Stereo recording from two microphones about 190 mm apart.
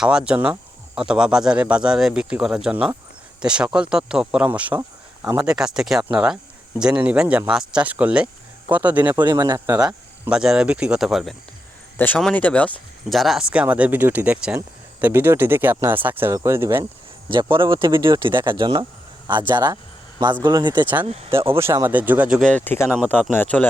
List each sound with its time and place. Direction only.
0.0 s speech: 5° right (ahead or behind)
9.2 s speech: 20° right (ahead or behind)
9.8 s speech: 5° right (ahead or behind)
17.2 s speech: 25° right (ahead or behind)
20.8 s speech: 10° right (ahead or behind)
22.4 s speech: 10° left (ahead or behind)